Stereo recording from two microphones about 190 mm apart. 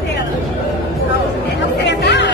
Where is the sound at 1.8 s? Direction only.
65° left (ahead or behind).